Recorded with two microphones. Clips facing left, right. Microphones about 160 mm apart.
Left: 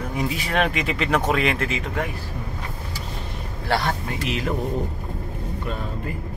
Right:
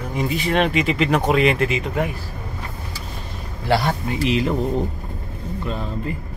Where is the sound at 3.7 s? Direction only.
10° right (ahead or behind).